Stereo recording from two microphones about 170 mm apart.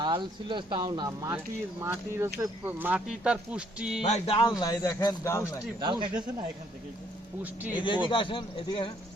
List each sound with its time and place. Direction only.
0.0 s speech: 30° right (ahead or behind); by 4.0 s 5° right (ahead or behind)
4.0 s speech: 35° left (ahead or behind)
4.6 s speech: 20° left (ahead or behind)
5.8 s speech: 25° right (ahead or behind)
8.1 s speech: 30° left (ahead or behind)